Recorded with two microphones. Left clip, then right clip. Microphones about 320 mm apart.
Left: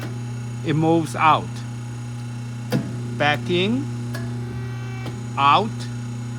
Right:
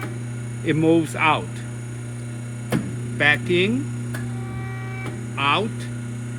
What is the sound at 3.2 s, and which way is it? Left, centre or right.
Speech, centre.